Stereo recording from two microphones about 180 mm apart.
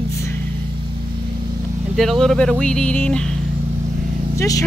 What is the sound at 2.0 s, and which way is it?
Speech, centre (ahead or behind).